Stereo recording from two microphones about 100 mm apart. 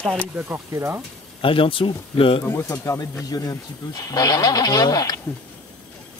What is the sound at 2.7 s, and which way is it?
Speech, 35° left (ahead or behind).